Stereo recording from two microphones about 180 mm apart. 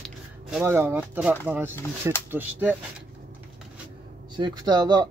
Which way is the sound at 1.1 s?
10° right (ahead or behind).